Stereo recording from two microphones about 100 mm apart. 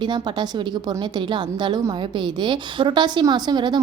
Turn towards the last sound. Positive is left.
turn(degrees=-45)  # may be behind; listen again after turning